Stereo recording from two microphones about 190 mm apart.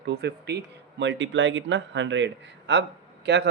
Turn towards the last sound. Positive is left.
turn(degrees=-65)  # may be behind; listen again after turning